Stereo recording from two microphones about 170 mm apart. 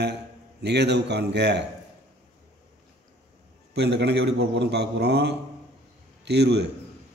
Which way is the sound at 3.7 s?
80° right.